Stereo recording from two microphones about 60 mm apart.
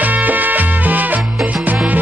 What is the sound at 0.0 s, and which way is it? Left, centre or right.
Music, right.